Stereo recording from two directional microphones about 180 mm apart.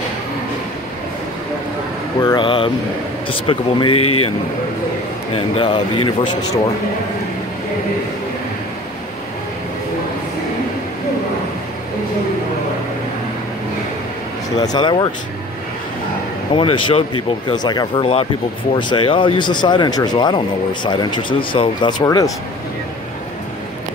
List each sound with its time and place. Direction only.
2.2 s speech: 25° left (ahead or behind)
5.3 s speech: 25° left (ahead or behind)
14.6 s speech: 25° left (ahead or behind)
16.5 s speech: 30° left (ahead or behind)